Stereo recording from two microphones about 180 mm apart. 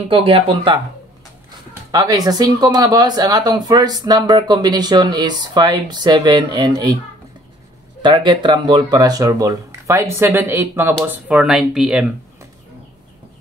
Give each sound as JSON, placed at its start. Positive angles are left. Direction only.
{"t": 0.1, "sound": "speech", "side_deg": -30}
{"t": 1.7, "sound": "speech", "side_deg": -20}
{"t": 8.0, "sound": "speech", "side_deg": -25}